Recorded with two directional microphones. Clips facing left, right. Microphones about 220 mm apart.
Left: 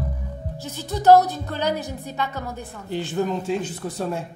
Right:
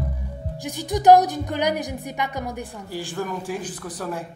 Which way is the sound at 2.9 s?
20° left (ahead or behind).